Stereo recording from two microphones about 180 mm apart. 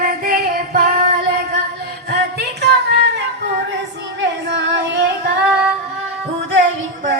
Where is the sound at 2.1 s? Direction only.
65° right (ahead or behind).